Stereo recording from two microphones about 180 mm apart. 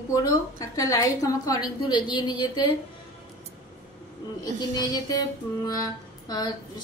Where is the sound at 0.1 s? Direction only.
20° left (ahead or behind).